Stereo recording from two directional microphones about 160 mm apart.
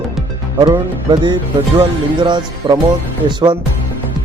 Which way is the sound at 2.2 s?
30° right (ahead or behind).